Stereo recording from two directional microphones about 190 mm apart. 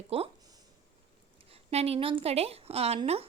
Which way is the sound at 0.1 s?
30° right (ahead or behind).